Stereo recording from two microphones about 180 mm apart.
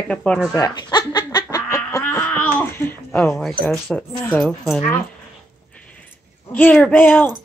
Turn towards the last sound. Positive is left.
turn(degrees=10)  # may be behind; listen again after turning